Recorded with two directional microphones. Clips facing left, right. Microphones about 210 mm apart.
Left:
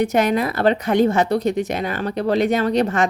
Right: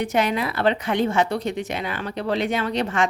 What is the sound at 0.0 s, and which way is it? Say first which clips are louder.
Speech: left 4 dB; 40° left (ahead or behind).